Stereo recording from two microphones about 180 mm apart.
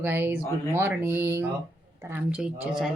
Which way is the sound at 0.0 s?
10° right (ahead or behind).